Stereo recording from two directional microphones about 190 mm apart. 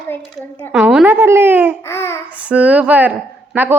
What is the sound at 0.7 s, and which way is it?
Speech, 5° right (ahead or behind).